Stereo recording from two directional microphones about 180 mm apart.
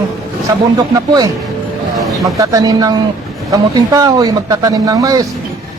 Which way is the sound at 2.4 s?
20° right (ahead or behind).